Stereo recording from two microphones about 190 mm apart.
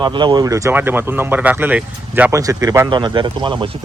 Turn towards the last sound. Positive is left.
turn(degrees=-25)  # may be behind; listen again after turning